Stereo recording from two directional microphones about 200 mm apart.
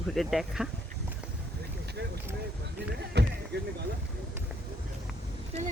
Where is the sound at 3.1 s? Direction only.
60° right (ahead or behind).